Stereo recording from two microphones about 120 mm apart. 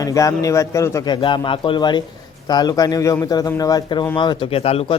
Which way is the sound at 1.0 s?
40° left (ahead or behind).